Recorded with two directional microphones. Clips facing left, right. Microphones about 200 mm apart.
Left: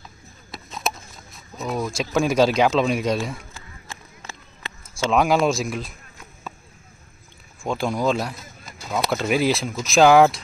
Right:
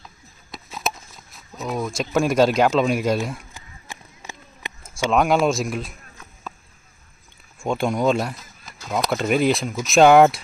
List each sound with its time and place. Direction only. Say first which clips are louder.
0.5 s a sound: even; centre (ahead or behind)
3.5 s run: even; 15° right (ahead or behind)
5.1 s speech: even; centre (ahead or behind)
7.6 s speech: right 2 dB; centre (ahead or behind)